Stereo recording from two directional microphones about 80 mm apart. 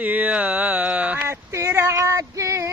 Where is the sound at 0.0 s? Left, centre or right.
Centre.